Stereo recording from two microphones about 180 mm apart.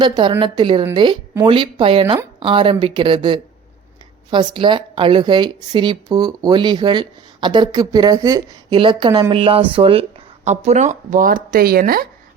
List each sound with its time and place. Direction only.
0.0 s speech: 25° right (ahead or behind); by 12.0 s 55° right (ahead or behind)